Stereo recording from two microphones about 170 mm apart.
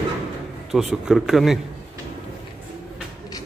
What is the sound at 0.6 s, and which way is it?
Speech, 5° right (ahead or behind).